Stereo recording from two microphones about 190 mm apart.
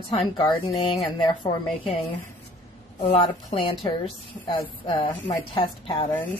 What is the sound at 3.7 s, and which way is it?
A woman's voice, 25° left (ahead or behind).